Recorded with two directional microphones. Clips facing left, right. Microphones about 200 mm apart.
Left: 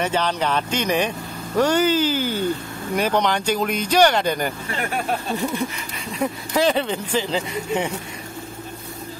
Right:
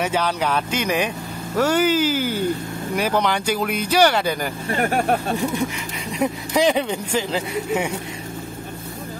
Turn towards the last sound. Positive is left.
turn(degrees=-10)  # may be behind; listen again after turning